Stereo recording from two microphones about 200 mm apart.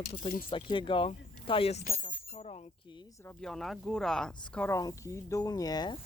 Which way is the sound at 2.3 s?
30° left (ahead or behind).